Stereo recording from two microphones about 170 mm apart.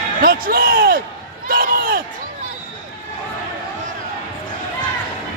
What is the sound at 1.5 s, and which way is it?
Crowd, 60° right (ahead or behind).